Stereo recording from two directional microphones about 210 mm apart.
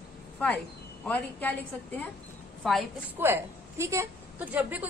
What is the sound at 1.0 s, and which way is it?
Speech, 10° left (ahead or behind).